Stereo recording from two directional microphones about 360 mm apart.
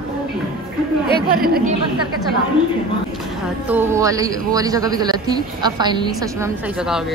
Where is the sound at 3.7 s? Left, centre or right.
Centre.